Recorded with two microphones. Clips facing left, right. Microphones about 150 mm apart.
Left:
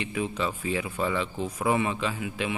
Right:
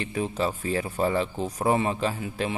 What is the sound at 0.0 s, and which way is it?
Speech, 40° right (ahead or behind).